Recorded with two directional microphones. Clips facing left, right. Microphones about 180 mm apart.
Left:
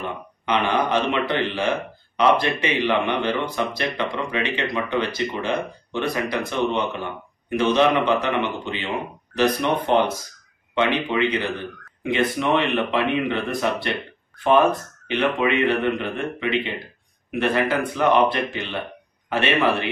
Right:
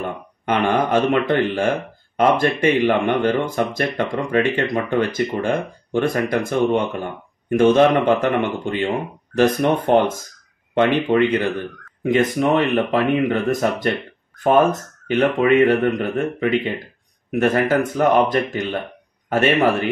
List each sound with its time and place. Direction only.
0.0 s speech: 45° right (ahead or behind)